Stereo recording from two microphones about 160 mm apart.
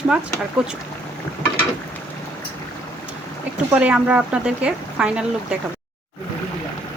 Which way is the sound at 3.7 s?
5° right (ahead or behind).